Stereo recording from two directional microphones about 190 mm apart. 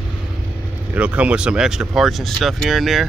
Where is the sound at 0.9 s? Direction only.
5° right (ahead or behind).